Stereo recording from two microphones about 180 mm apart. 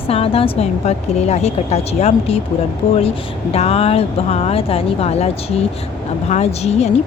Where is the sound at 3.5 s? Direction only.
35° left (ahead or behind).